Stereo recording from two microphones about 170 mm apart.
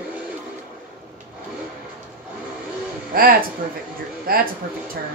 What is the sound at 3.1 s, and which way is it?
Speech, 60° right (ahead or behind).